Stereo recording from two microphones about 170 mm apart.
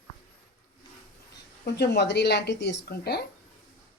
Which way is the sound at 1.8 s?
80° left.